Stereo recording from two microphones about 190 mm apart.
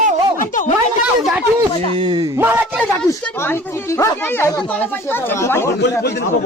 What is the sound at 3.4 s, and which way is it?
Speech, 15° left (ahead or behind).